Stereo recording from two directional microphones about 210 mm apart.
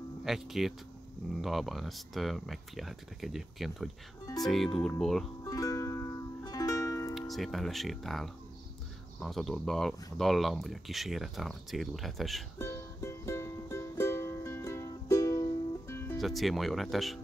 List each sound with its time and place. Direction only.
0.2 s speech: centre (ahead or behind)
5.4 s music: 15° left (ahead or behind)
7.2 s speech: centre (ahead or behind)
12.5 s music: 10° left (ahead or behind)
16.2 s speech: centre (ahead or behind)